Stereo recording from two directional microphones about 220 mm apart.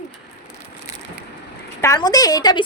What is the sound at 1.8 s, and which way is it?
Speech, 15° left (ahead or behind).